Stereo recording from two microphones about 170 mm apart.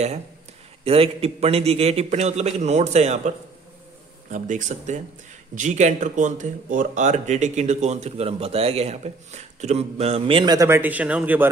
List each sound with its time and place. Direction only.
0.8 s speech: 35° right (ahead or behind); by 11.4 s 10° right (ahead or behind)